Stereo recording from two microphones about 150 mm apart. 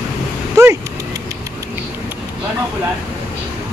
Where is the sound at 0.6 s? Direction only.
20° right (ahead or behind).